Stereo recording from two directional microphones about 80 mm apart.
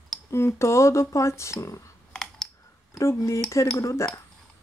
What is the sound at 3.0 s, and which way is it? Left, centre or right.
Speech, left.